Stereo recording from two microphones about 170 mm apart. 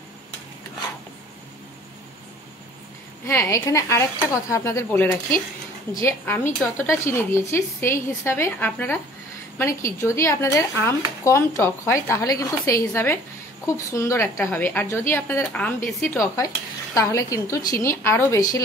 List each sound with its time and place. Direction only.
3.3 s speech: 15° left (ahead or behind)
16.3 s a woman's voice: 20° left (ahead or behind)